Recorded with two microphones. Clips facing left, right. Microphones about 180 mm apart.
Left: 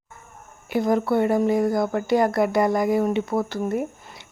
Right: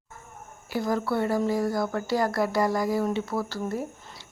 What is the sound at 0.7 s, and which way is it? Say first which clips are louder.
Speech: left 6 dB; 20° left (ahead or behind).